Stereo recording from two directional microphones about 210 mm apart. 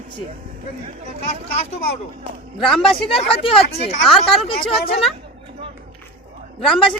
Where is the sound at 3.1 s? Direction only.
25° left (ahead or behind).